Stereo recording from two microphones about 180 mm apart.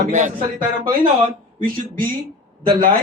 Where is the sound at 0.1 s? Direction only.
40° right (ahead or behind).